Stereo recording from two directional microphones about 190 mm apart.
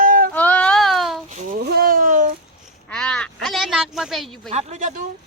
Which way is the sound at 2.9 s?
5° left (ahead or behind).